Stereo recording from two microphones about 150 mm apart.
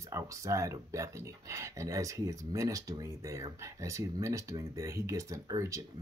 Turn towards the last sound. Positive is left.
turn(degrees=-20)  # may be behind; listen again after turning